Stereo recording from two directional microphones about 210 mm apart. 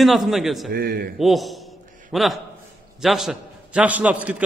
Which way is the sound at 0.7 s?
45° right (ahead or behind).